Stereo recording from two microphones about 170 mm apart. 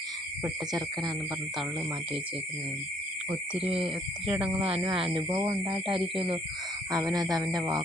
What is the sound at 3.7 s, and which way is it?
Speech, 30° right (ahead or behind).